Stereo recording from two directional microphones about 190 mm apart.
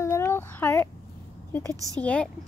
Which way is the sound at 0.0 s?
15° left (ahead or behind).